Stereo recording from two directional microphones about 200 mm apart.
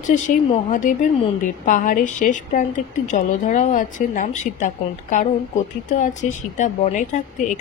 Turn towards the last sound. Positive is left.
turn(degrees=40)  # may be behind; listen again after turning